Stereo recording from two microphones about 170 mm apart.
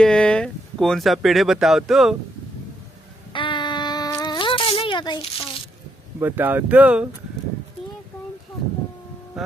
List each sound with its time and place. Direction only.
0.0 s speech: 5° left (ahead or behind)
3.3 s a sound: 25° left (ahead or behind)
6.1 s speech: 10° right (ahead or behind)